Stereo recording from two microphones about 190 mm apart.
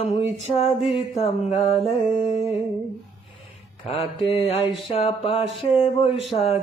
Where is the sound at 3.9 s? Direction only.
30° left (ahead or behind).